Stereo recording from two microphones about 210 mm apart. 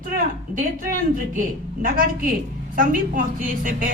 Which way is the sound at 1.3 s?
40° right (ahead or behind).